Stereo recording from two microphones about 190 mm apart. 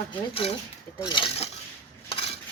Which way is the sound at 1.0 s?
25° left (ahead or behind).